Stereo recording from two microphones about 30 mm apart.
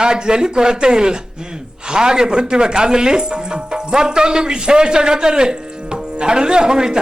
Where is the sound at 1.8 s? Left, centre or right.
Right.